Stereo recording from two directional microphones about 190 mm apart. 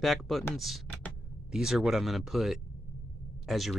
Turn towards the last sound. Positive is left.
turn(degrees=0)  # may be behind; listen again after turning